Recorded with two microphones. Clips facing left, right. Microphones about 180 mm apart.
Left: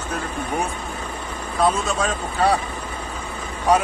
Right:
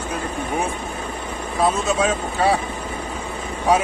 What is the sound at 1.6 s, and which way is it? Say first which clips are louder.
Speech: right 2 dB; centre (ahead or behind).